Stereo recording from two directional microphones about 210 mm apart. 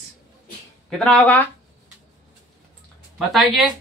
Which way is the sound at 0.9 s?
5° left (ahead or behind).